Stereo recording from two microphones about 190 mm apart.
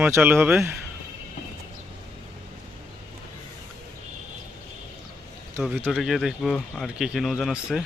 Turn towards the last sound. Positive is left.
turn(degrees=-5)  # may be behind; listen again after turning